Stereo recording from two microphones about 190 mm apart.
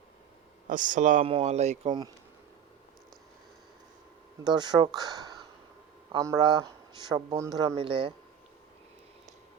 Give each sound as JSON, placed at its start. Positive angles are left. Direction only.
{"t": 0.7, "sound": "speech", "side_deg": -45}
{"t": 4.4, "sound": "speech", "side_deg": -20}